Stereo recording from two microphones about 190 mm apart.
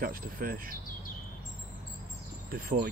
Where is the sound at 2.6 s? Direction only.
50° right (ahead or behind).